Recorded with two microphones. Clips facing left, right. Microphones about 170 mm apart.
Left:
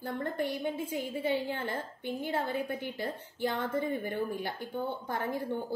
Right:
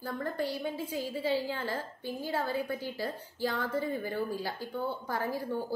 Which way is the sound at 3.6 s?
20° left (ahead or behind).